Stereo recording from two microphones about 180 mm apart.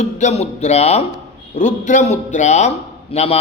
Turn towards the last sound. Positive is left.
turn(degrees=35)  # may be behind; listen again after turning